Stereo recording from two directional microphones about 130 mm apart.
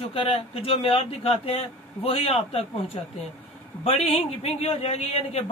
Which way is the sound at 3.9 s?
50° left (ahead or behind).